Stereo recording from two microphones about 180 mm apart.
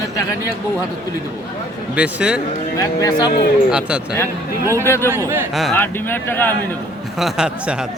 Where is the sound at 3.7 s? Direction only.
5° right (ahead or behind).